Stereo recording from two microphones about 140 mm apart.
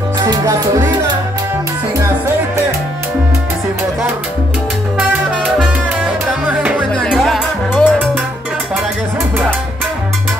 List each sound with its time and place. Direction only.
0.2 s salsa music: 30° right (ahead or behind)
6.9 s music: 5° left (ahead or behind)